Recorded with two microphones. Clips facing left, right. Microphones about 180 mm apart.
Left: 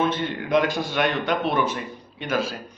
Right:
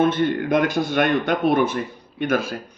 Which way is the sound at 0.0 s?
55° right (ahead or behind).